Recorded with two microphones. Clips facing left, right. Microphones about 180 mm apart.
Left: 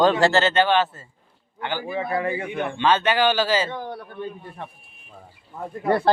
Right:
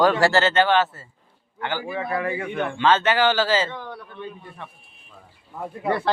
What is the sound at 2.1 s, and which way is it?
Speech, 30° left (ahead or behind).